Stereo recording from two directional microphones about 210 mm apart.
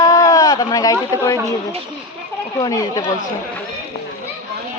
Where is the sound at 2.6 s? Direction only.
15° left (ahead or behind).